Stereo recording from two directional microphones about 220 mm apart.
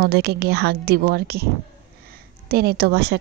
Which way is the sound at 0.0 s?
50° right (ahead or behind).